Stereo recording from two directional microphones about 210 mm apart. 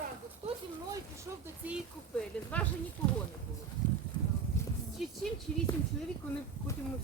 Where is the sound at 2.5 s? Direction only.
5° left (ahead or behind).